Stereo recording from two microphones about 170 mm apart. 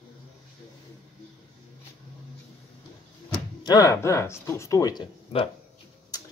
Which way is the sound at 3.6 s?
20° left (ahead or behind).